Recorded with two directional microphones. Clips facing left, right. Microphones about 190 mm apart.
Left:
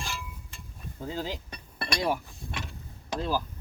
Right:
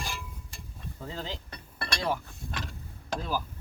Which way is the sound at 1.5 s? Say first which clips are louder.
Left 3 dB; 20° left (ahead or behind).